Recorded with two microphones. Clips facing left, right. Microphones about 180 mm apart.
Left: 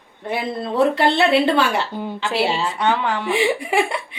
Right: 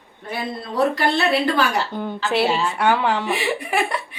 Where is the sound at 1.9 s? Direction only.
10° left (ahead or behind).